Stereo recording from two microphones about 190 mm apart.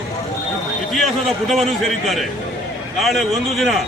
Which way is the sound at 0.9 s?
Centre (ahead or behind).